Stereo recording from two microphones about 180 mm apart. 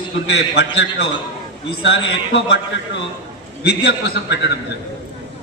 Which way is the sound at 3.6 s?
65° left (ahead or behind).